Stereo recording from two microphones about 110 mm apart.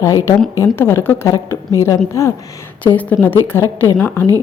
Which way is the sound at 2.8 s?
15° left (ahead or behind).